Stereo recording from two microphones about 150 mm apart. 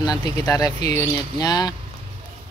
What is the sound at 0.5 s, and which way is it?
Speech, 25° left (ahead or behind).